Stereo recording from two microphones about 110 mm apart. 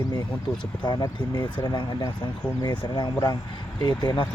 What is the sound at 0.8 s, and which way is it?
Speech, 40° left (ahead or behind).